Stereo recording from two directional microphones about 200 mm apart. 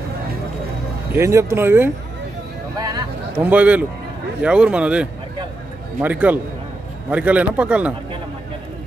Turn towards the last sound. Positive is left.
turn(degrees=-5)  # may be behind; listen again after turning